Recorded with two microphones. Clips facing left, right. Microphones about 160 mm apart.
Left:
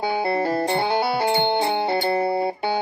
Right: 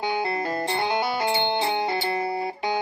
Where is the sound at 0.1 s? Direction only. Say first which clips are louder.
Left 7 dB; 35° left (ahead or behind).